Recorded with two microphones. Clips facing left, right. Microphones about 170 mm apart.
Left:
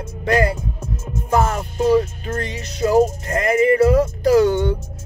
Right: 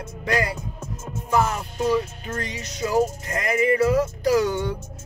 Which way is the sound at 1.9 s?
30° left (ahead or behind).